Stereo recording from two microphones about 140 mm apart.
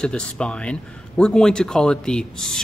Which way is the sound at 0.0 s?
5° left (ahead or behind).